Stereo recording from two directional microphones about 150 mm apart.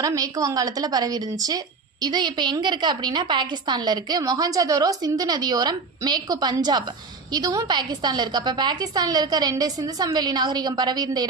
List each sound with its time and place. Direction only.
0.0 s speech: 25° right (ahead or behind)